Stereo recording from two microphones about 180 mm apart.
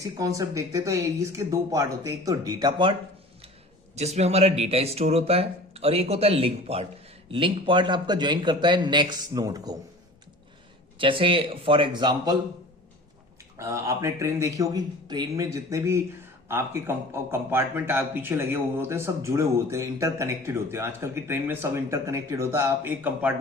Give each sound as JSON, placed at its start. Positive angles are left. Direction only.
{"t": 0.0, "sound": "a man's voice", "side_deg": -20}
{"t": 3.9, "sound": "a man's voice", "side_deg": -35}
{"t": 10.9, "sound": "a man's voice", "side_deg": -30}
{"t": 13.6, "sound": "a man's voice", "side_deg": -15}